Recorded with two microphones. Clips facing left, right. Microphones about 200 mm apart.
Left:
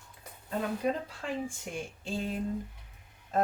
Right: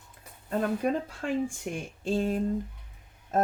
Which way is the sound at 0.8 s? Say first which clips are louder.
Right 3 dB; 55° right (ahead or behind).